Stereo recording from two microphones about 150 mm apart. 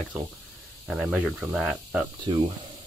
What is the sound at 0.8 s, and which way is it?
Speech, 5° right (ahead or behind).